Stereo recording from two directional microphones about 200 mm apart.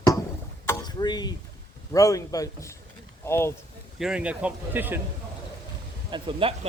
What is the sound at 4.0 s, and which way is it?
Speech, 5° right (ahead or behind).